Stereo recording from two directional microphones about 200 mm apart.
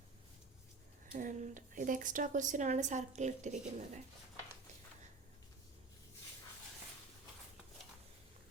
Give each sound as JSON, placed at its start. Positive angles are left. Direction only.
{"t": 1.1, "sound": "speech", "side_deg": -40}